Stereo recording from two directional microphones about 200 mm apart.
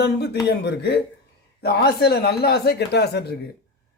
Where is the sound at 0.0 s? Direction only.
55° left (ahead or behind).